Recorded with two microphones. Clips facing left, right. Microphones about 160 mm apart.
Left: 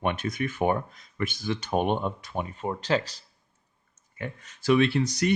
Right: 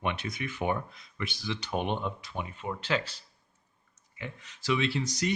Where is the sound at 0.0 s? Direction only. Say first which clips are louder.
Left 5 dB; 50° left (ahead or behind).